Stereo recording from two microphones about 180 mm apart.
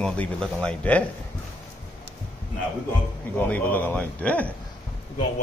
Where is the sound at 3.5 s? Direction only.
10° left (ahead or behind).